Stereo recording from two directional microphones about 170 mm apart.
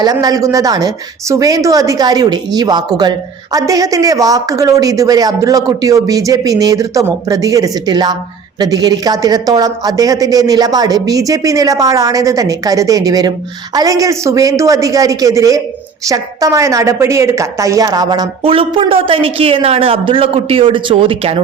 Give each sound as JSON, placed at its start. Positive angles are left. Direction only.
{"t": 0.0, "sound": "a woman's voice", "side_deg": -20}